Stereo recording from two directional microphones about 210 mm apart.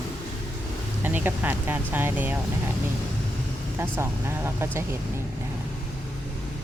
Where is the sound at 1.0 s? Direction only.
10° right (ahead or behind).